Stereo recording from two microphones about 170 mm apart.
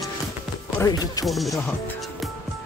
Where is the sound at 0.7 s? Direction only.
20° left (ahead or behind).